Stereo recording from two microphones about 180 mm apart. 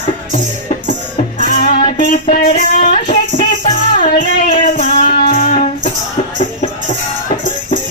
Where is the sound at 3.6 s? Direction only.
45° left (ahead or behind).